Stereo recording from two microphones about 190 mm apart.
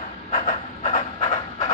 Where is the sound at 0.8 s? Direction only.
35° left (ahead or behind).